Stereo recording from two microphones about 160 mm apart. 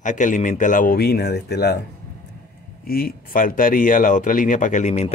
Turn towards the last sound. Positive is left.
turn(degrees=45)  # may be behind; listen again after turning